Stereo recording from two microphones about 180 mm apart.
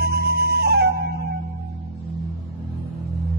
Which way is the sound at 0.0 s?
60° right (ahead or behind).